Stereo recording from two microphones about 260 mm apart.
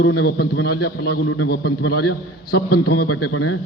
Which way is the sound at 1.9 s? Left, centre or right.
Left.